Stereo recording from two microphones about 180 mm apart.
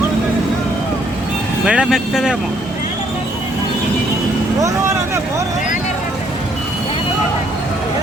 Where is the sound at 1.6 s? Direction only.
5° right (ahead or behind).